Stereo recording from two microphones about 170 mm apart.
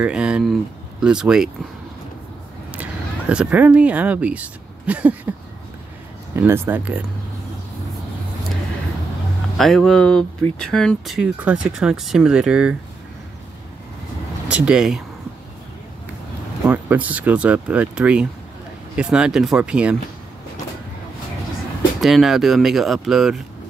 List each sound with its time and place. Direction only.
0.0 s speech: 5° right (ahead or behind)
2.7 s speech: 10° right (ahead or behind)
6.3 s speech: 15° right (ahead or behind)
9.6 s speech: centre (ahead or behind)
14.5 s speech: 5° right (ahead or behind)
16.6 s speech: 10° right (ahead or behind)
22.0 s speech: centre (ahead or behind)